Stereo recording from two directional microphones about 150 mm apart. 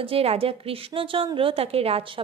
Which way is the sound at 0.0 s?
40° right (ahead or behind).